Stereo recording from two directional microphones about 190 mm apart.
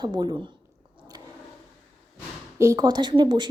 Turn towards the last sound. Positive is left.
turn(degrees=-25)  # may be behind; listen again after turning